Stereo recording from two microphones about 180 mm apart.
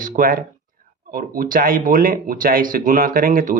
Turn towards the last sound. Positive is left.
turn(degrees=-50)  # may be behind; listen again after turning